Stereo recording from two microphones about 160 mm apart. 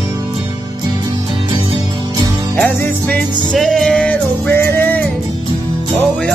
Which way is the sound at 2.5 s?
10° left (ahead or behind).